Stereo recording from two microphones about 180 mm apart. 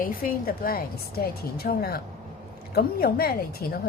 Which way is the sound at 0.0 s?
50° left (ahead or behind).